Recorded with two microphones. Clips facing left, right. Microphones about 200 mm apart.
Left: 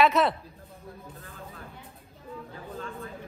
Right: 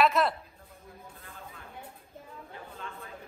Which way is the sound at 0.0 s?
Centre (ahead or behind).